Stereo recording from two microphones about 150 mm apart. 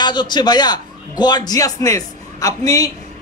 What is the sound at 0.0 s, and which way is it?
A man's voice, 30° left (ahead or behind).